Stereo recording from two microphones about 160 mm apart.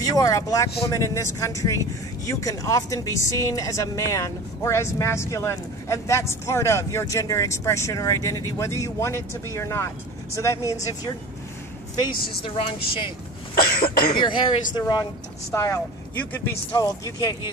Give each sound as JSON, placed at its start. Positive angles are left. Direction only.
{"t": 0.1, "sound": "speech", "side_deg": 20}
{"t": 12.4, "sound": "speech", "side_deg": 35}
{"t": 13.6, "sound": "cough", "side_deg": 70}
{"t": 14.1, "sound": "speech", "side_deg": 30}